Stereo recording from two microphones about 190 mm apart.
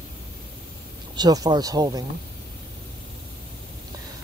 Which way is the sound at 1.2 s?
20° right (ahead or behind).